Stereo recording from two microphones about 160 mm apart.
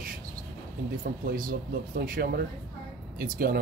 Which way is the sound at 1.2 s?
60° right (ahead or behind).